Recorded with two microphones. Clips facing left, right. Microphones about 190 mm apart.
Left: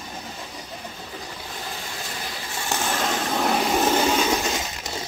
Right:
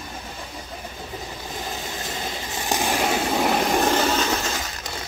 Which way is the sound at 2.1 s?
20° right (ahead or behind).